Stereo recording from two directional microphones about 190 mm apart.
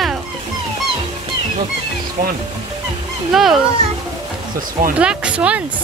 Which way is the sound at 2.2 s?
40° right (ahead or behind).